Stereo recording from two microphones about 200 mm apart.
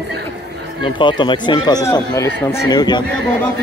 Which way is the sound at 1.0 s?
25° left (ahead or behind).